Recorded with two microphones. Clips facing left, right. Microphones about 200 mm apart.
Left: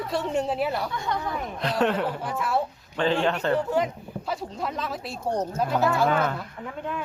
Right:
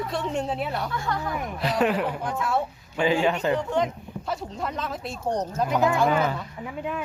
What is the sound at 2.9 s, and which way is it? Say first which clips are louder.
Speech: right 1 dB; 10° right (ahead or behind).